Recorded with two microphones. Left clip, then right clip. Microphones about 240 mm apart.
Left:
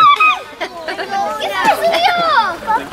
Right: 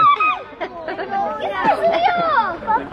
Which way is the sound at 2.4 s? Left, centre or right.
Centre.